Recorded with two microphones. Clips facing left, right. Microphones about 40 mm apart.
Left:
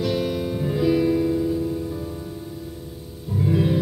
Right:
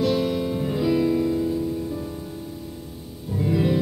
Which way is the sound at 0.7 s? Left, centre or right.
Centre.